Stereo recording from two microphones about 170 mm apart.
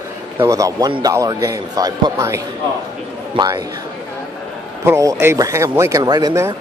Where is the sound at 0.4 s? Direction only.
20° right (ahead or behind).